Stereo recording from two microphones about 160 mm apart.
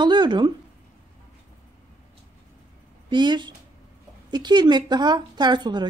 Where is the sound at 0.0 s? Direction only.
30° right (ahead or behind).